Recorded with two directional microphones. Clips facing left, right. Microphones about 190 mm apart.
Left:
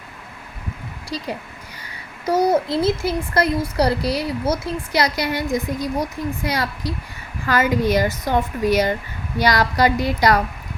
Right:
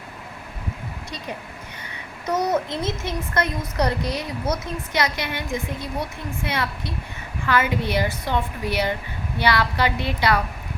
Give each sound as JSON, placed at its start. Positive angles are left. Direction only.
{"t": 2.2, "sound": "a child's voice", "side_deg": 30}